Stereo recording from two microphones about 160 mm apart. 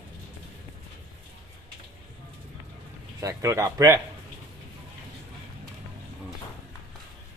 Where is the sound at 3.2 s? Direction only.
20° right (ahead or behind).